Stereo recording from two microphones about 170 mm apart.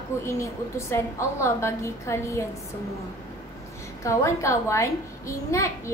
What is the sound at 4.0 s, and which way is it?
A woman's voice, 15° left (ahead or behind).